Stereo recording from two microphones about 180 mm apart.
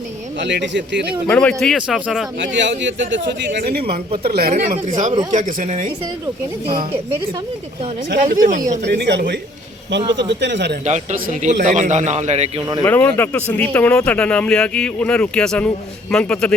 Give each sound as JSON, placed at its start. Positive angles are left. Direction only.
{"t": 0.3, "sound": "speech", "side_deg": -75}
{"t": 1.3, "sound": "a man's voice", "side_deg": 5}
{"t": 2.4, "sound": "a man's voice", "side_deg": -90}
{"t": 4.5, "sound": "speech", "side_deg": -45}
{"t": 8.1, "sound": "speech", "side_deg": -50}
{"t": 8.8, "sound": "speech", "side_deg": -65}
{"t": 10.0, "sound": "speech", "side_deg": -25}
{"t": 10.4, "sound": "speech", "side_deg": -75}
{"t": 10.8, "sound": "a man's voice", "side_deg": -40}
{"t": 12.8, "sound": "speech", "side_deg": 10}